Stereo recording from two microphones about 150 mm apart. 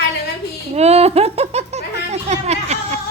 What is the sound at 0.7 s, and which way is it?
Speech, 45° right (ahead or behind).